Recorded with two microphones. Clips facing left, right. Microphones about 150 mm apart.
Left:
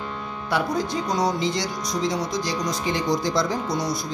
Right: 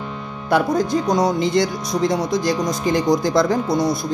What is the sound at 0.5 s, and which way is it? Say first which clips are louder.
Speech: right 7 dB; 45° right (ahead or behind).